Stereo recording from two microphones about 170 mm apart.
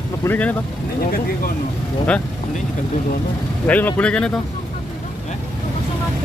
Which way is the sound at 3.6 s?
10° left (ahead or behind).